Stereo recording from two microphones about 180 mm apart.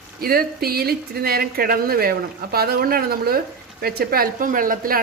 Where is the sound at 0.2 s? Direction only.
55° right (ahead or behind).